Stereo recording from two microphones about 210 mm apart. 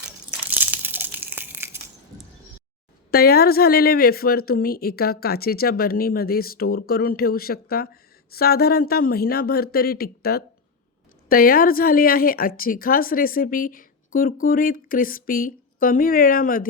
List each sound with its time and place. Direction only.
0.5 s crumpling: 10° right (ahead or behind)
3.1 s speech: 45° left (ahead or behind)